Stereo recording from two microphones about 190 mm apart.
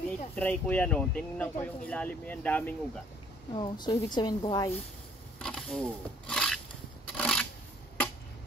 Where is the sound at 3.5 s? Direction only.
25° left (ahead or behind).